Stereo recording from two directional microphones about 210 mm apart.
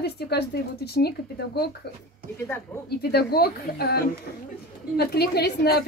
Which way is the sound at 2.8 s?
50° left (ahead or behind).